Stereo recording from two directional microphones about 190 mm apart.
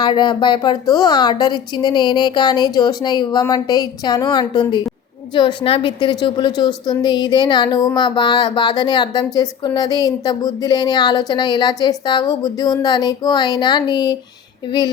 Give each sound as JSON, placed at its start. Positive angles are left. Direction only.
{"t": 0.0, "sound": "a woman's voice", "side_deg": 25}